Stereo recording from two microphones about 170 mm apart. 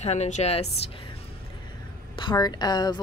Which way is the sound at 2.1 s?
25° left (ahead or behind).